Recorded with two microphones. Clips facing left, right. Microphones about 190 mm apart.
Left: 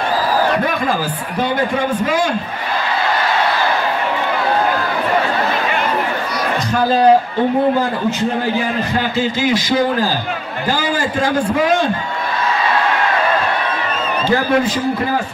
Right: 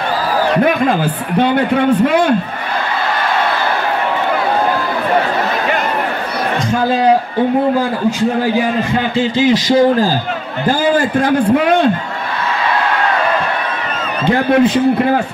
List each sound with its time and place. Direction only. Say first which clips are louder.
1.4 s a man's voice: right 5 dB; 65° right (ahead or behind)
9.1 s speech: right 6 dB; 40° right (ahead or behind)
10.8 s a man's voice: right 7 dB; 55° right (ahead or behind)
14.2 s a man's voice: right 5 dB; 60° right (ahead or behind)